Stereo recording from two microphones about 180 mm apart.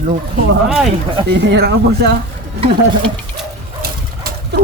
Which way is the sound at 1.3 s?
75° right (ahead or behind).